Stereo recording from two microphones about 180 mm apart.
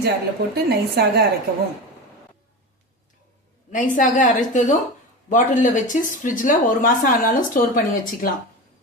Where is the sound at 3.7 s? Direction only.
45° left (ahead or behind).